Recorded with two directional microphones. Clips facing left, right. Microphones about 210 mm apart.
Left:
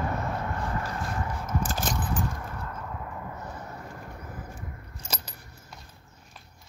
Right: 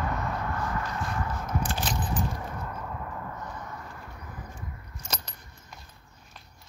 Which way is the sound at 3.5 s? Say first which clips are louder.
Left 1 dB; 30° left (ahead or behind).